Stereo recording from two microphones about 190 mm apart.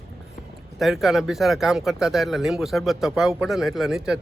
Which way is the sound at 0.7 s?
Centre (ahead or behind).